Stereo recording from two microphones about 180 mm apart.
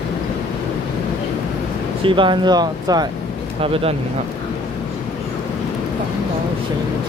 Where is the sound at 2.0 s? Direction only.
30° right (ahead or behind).